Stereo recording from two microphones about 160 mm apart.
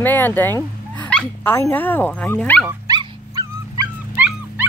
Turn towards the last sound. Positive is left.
turn(degrees=-10)  # may be behind; listen again after turning